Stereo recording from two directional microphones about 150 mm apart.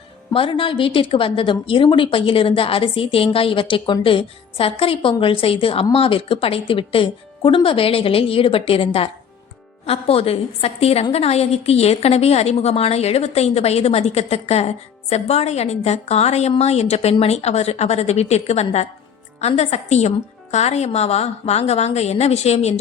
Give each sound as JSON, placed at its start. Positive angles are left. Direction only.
{"t": 0.3, "sound": "a woman's voice", "side_deg": 35}